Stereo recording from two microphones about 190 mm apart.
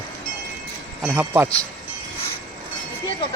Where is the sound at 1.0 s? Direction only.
10° right (ahead or behind).